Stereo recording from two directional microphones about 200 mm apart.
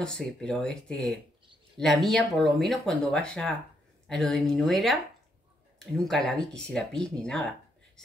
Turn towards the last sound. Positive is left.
turn(degrees=5)  # may be behind; listen again after turning